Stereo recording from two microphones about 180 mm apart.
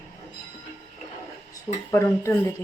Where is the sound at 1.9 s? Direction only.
15° left (ahead or behind).